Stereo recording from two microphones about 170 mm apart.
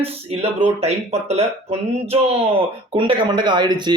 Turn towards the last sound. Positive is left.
turn(degrees=-25)  # may be behind; listen again after turning